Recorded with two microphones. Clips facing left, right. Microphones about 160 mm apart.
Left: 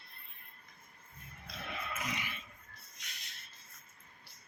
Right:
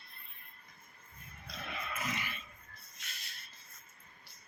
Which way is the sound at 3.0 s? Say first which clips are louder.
Right 2 dB; 20° left (ahead or behind).